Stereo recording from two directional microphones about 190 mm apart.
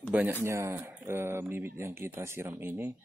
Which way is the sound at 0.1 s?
10° right (ahead or behind).